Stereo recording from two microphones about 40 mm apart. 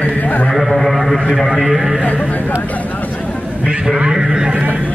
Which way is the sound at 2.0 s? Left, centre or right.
Left.